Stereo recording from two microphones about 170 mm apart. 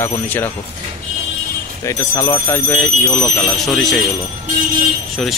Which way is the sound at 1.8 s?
20° left (ahead or behind).